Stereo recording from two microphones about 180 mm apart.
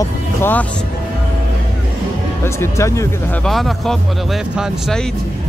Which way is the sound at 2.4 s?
15° left (ahead or behind).